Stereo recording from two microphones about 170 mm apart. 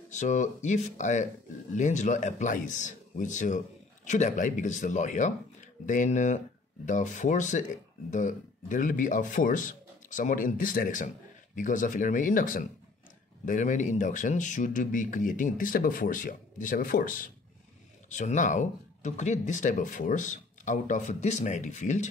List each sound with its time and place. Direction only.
0.1 s a man's voice: 45° left (ahead or behind)